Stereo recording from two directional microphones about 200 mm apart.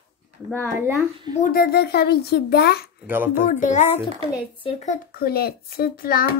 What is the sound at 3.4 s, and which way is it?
A child's voice, 40° left (ahead or behind).